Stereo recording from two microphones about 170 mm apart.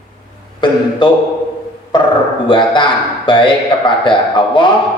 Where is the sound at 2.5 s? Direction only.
30° left (ahead or behind).